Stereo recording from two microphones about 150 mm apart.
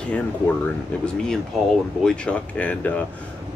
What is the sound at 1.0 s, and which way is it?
Speech, 5° left (ahead or behind).